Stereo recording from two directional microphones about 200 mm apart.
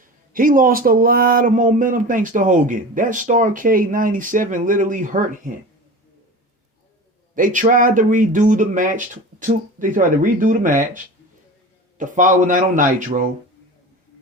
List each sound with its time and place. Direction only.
0.0 s speech: 45° right (ahead or behind)
7.3 s speech: 40° right (ahead or behind)